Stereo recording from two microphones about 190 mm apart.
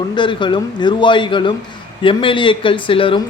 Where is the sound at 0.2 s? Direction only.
25° left (ahead or behind).